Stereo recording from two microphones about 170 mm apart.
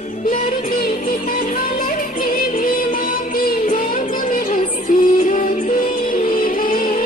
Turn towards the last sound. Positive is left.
turn(degrees=55)  # may be behind; listen again after turning